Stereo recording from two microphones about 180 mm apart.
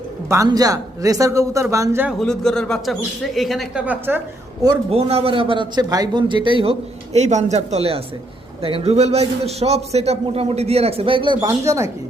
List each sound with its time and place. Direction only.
0.3 s speech: 20° right (ahead or behind)
2.1 s speech: 5° left (ahead or behind)
4.9 s a man's voice: 35° right (ahead or behind)
11.3 s speech: 15° right (ahead or behind)